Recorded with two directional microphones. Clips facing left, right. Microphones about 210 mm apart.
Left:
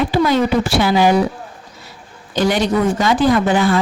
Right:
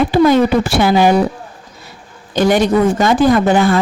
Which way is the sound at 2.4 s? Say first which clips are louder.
Right 4 dB; 50° right (ahead or behind).